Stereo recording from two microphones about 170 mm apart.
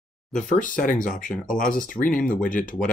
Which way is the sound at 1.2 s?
5° left (ahead or behind).